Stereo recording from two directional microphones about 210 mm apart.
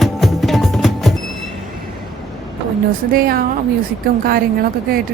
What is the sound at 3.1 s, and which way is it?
Speech, 45° right (ahead or behind).